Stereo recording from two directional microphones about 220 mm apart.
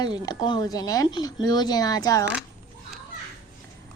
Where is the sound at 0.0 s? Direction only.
20° left (ahead or behind).